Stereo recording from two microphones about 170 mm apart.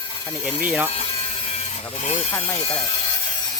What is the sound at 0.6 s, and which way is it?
Speech, 10° right (ahead or behind).